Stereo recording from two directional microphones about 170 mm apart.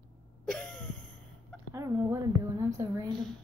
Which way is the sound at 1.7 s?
20° right (ahead or behind).